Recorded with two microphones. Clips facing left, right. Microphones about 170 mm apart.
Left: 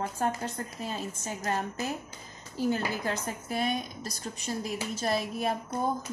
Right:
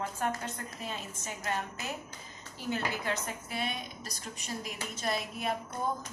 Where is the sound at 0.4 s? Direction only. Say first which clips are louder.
Left 4 dB; 35° left (ahead or behind).